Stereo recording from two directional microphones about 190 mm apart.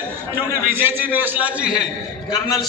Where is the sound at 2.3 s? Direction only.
20° left (ahead or behind).